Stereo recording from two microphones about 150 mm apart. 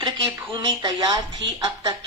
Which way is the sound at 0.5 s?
25° right (ahead or behind).